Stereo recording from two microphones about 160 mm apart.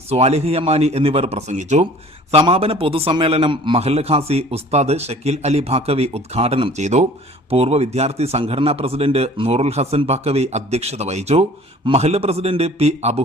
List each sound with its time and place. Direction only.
0.1 s a man's voice: 40° right (ahead or behind)